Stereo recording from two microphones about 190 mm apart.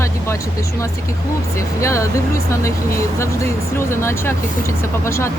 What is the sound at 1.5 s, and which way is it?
Speech, 15° left (ahead or behind).